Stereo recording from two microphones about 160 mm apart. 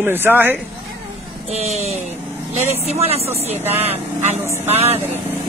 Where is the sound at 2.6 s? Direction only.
40° right (ahead or behind).